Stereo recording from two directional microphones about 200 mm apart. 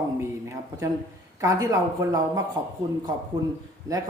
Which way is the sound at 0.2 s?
15° right (ahead or behind).